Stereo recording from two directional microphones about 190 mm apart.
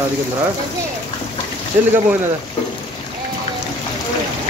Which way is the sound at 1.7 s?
10° right (ahead or behind).